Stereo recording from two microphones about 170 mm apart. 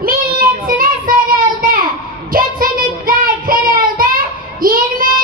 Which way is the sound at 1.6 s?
55° right (ahead or behind).